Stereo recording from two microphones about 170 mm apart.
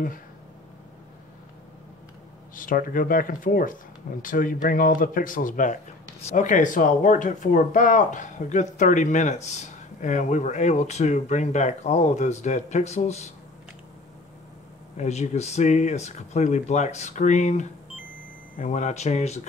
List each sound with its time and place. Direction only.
2.5 s speech: 55° left (ahead or behind)
15.0 s speech: 40° left (ahead or behind)